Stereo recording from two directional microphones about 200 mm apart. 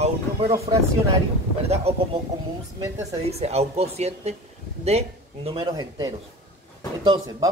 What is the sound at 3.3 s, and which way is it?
Speech, 30° right (ahead or behind).